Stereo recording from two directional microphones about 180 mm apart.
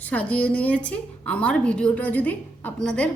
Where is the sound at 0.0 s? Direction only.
10° left (ahead or behind).